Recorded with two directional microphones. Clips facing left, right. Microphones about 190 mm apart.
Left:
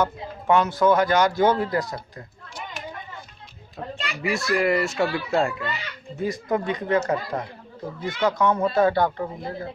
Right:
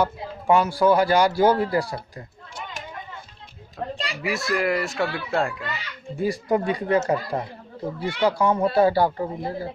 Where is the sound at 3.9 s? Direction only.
35° right (ahead or behind).